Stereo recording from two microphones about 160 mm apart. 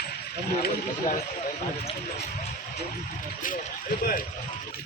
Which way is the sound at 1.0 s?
45° left (ahead or behind).